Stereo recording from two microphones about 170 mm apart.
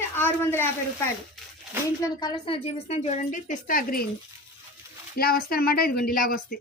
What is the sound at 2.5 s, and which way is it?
A woman's voice, 35° left (ahead or behind).